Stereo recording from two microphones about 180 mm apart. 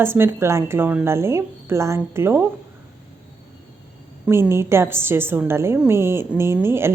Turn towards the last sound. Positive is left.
turn(degrees=-15)  # may be behind; listen again after turning